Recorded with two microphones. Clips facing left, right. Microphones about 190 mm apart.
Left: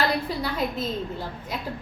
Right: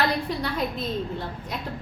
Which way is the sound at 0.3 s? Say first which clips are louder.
Even; centre (ahead or behind).